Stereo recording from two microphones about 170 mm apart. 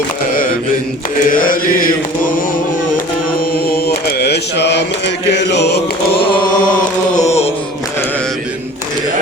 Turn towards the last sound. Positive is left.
turn(degrees=40)  # may be behind; listen again after turning